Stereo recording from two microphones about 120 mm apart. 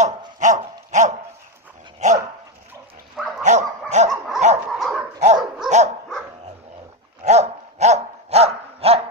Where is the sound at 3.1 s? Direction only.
Centre (ahead or behind).